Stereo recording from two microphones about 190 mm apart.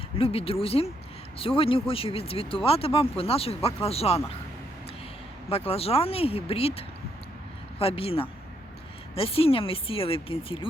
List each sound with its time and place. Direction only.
0.2 s speech: 30° left (ahead or behind)
5.5 s speech: 30° left (ahead or behind)